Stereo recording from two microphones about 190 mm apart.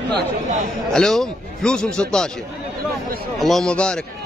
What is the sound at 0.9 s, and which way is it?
A man's voice, 5° left (ahead or behind).